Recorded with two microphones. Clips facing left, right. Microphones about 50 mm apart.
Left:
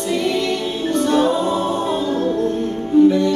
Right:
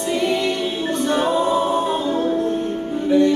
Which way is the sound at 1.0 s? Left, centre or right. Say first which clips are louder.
Left 3 dB; centre.